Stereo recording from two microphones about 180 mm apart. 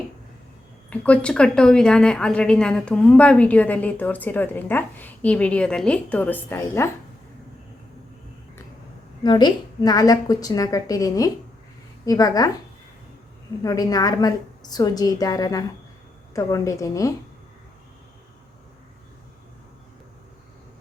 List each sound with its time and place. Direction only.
0.9 s a woman's voice: 5° left (ahead or behind)
9.2 s a woman's voice: 25° left (ahead or behind)
13.6 s a woman's voice: 20° left (ahead or behind)